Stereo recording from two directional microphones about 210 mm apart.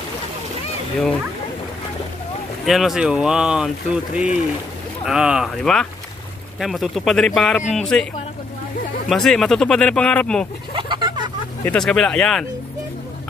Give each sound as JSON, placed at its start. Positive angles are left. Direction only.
{"t": 2.6, "sound": "speech", "side_deg": 0}
{"t": 9.1, "sound": "speech", "side_deg": 0}
{"t": 10.7, "sound": "a sound", "side_deg": -25}
{"t": 11.6, "sound": "speech", "side_deg": 5}